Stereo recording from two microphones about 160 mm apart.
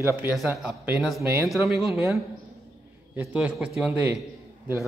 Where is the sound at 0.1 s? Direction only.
10° right (ahead or behind).